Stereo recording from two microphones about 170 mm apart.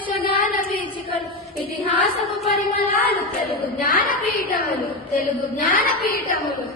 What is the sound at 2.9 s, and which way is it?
A woman's voice, 60° left (ahead or behind).